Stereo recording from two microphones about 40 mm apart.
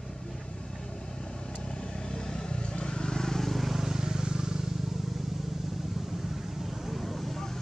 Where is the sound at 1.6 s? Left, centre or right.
Centre.